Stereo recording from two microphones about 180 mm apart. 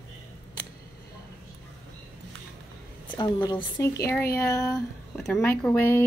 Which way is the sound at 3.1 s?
25° left (ahead or behind).